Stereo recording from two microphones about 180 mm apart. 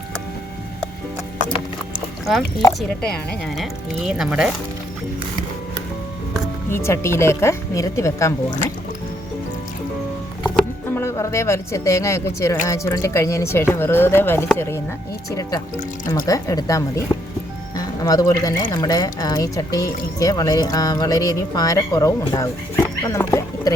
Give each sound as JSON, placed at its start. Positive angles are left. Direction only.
{"t": 3.0, "sound": "speech", "side_deg": 5}
{"t": 6.7, "sound": "speech", "side_deg": 15}
{"t": 10.4, "sound": "speech", "side_deg": 10}